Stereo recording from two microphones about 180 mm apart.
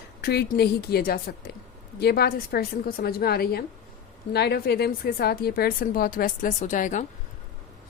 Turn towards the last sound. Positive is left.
turn(degrees=45)  # may be behind; listen again after turning